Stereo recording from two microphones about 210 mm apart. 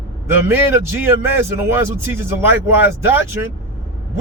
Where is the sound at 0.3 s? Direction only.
10° right (ahead or behind).